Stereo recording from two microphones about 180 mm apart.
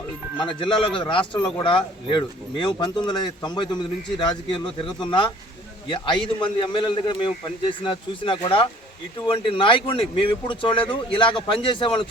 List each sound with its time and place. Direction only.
0.3 s speech: 25° left (ahead or behind)